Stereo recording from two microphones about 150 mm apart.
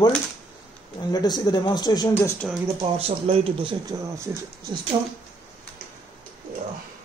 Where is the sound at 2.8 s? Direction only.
40° right (ahead or behind).